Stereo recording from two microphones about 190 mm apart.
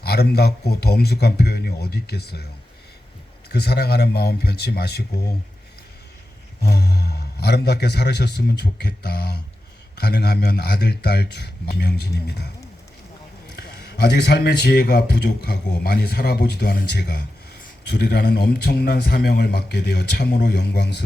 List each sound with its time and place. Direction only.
0.0 s a man's voice: 55° left (ahead or behind)
3.5 s a man's voice: 55° left (ahead or behind)
6.6 s a man's voice: 60° left (ahead or behind)
13.5 s a man's voice: 55° left (ahead or behind)